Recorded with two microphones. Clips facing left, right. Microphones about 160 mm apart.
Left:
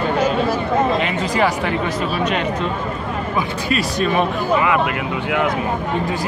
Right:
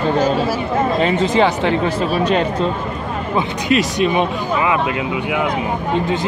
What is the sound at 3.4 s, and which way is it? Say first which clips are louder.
Speech: right 5 dB; 20° right (ahead or behind).